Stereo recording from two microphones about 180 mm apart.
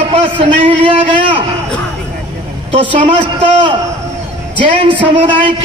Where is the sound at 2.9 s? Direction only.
35° right (ahead or behind).